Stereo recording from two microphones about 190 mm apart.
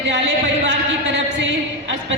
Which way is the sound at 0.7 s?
70° right (ahead or behind).